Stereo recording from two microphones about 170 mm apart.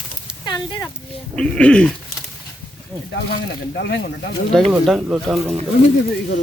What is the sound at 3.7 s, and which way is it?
Speech, 85° left.